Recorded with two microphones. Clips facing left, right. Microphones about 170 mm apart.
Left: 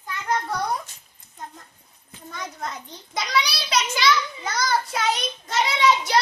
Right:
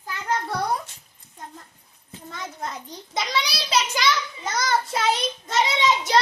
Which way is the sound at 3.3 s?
25° right (ahead or behind).